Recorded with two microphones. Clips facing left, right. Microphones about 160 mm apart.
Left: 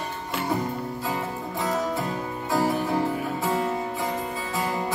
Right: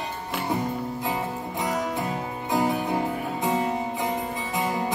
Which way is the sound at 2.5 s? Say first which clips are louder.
Even; 15° right (ahead or behind).